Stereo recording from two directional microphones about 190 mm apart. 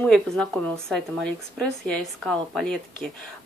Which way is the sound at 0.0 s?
5° left (ahead or behind).